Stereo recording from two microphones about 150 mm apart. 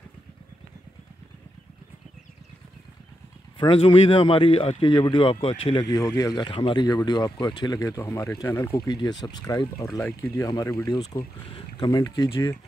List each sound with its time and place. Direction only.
3.5 s a man's voice: 35° left (ahead or behind)
5.9 s speech: 25° left (ahead or behind)
9.8 s speech: 5° left (ahead or behind); by 12.5 s 25° left (ahead or behind)